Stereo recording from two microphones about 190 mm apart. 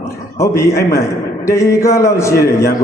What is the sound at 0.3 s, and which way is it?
A man's voice, 15° left (ahead or behind).